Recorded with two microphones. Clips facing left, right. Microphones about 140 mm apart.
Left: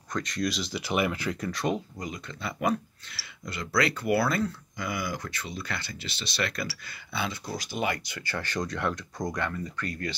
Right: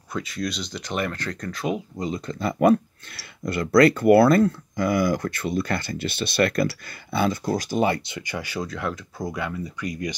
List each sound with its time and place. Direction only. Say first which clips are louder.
0.1 s speech: right 1 dB; 5° right (ahead or behind)
2.0 s speech: right 9 dB; 30° right (ahead or behind); by 7.8 s 50° right (ahead or behind)
7.8 s speech: right 7 dB; 25° right (ahead or behind)